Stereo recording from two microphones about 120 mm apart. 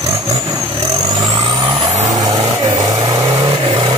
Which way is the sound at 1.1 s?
35° right (ahead or behind).